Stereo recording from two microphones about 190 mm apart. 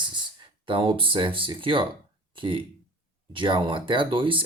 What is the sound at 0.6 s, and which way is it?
Speech, 25° right (ahead or behind).